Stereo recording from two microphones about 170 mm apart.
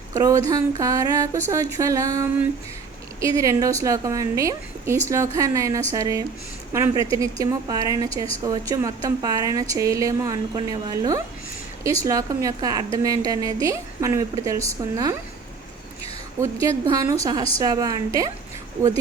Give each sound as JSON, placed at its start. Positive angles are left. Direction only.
{"t": 0.1, "sound": "a woman's voice", "side_deg": -20}
{"t": 16.4, "sound": "a woman's voice", "side_deg": -15}